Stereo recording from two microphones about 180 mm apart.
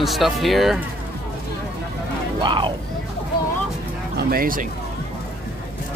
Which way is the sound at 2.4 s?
25° right (ahead or behind).